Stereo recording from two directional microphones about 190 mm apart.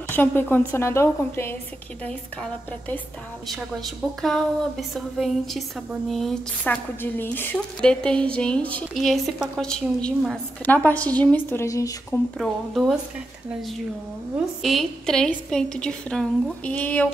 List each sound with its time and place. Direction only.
0.1 s a woman's voice: 10° left (ahead or behind)
3.4 s a woman's voice: centre (ahead or behind); by 12.2 s 15° left (ahead or behind)
12.4 s a woman's voice: centre (ahead or behind)
14.3 s a woman's voice: centre (ahead or behind)